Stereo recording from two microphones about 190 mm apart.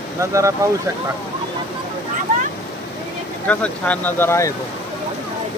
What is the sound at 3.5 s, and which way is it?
Speech, 5° left (ahead or behind).